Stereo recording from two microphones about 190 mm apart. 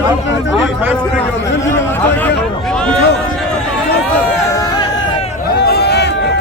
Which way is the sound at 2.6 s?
5° left (ahead or behind).